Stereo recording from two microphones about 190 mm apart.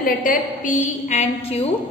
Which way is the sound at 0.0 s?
45° left (ahead or behind).